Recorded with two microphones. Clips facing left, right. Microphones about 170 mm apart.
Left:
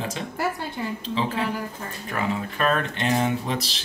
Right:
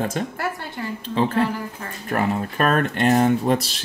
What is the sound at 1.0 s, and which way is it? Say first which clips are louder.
Speech: right 7 dB; 55° right (ahead or behind).